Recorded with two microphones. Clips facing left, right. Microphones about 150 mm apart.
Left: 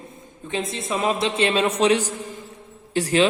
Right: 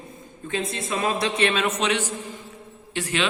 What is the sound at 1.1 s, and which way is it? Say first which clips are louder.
A woman's voice: left 2 dB; 25° left (ahead or behind).